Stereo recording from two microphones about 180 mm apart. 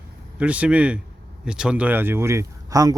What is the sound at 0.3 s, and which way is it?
Speech, 5° right (ahead or behind).